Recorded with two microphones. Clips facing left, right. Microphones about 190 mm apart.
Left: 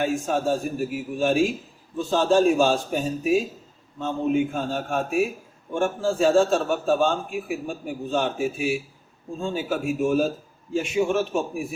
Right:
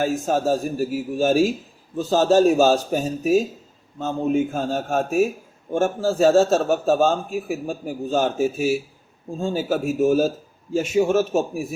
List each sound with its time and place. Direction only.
0.0 s a man's voice: 40° right (ahead or behind)